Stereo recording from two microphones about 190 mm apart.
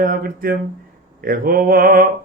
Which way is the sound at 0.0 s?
50° right (ahead or behind).